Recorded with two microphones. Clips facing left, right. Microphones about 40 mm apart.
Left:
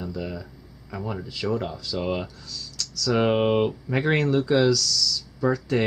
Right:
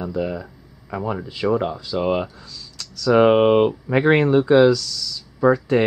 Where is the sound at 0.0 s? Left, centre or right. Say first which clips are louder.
Right 7 dB; right.